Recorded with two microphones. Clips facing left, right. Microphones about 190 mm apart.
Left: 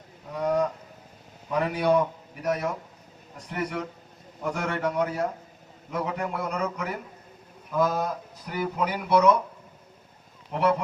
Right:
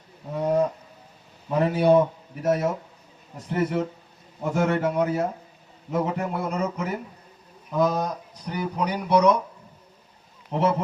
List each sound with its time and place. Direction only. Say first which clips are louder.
0.3 s cattle: right 2 dB; 25° right (ahead or behind)
1.5 s a man's voice: right 4 dB; 30° right (ahead or behind)
8.0 s speech: right 1 dB; 20° right (ahead or behind)
10.5 s a man's voice: right 1 dB; 25° right (ahead or behind)